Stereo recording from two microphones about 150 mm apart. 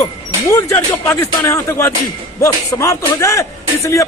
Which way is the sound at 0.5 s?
15° left (ahead or behind).